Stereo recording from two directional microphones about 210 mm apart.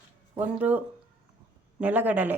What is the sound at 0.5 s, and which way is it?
Speech, 5° right (ahead or behind).